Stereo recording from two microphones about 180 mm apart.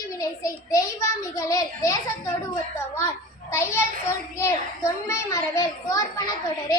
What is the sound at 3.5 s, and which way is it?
A child's voice, 15° left (ahead or behind).